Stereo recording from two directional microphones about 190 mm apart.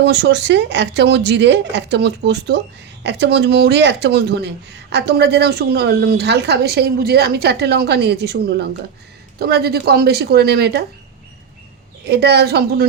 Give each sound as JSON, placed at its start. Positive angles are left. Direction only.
{"t": 0.0, "sound": "speech", "side_deg": -65}
{"t": 12.0, "sound": "speech", "side_deg": -60}